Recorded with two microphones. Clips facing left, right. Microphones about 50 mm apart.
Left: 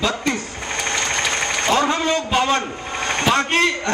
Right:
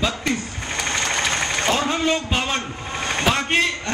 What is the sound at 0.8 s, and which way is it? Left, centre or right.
Engine, centre.